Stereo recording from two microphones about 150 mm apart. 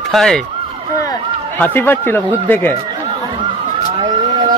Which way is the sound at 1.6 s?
10° left (ahead or behind).